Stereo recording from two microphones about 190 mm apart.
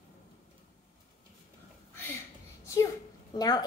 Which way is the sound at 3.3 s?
20° left (ahead or behind).